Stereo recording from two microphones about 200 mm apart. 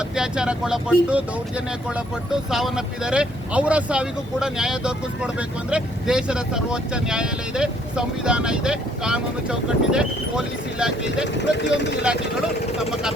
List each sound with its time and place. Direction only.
0.0 s speech: 5° right (ahead or behind)
11.3 s speech: 60° left (ahead or behind)
12.9 s speech: 5° right (ahead or behind)